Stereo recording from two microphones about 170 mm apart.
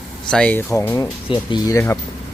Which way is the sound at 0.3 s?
5° left (ahead or behind).